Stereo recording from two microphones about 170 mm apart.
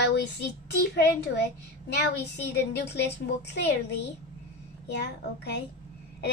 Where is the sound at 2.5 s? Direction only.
75° left (ahead or behind).